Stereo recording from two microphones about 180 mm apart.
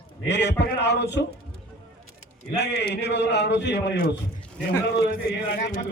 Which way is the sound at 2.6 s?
70° left (ahead or behind).